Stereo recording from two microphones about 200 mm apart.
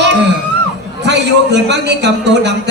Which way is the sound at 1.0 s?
60° right (ahead or behind).